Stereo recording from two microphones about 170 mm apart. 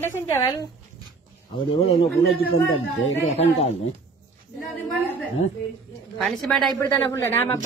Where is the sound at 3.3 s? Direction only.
35° left (ahead or behind).